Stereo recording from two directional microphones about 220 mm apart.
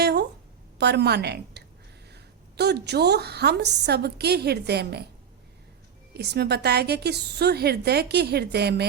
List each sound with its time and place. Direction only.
0.0 s a sound: 45° right (ahead or behind)
0.8 s a woman's voice: 50° right (ahead or behind)
6.1 s a woman's voice: 50° right (ahead or behind)